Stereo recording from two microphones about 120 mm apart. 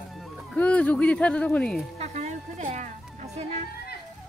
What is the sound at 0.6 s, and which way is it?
Speech, 10° left (ahead or behind).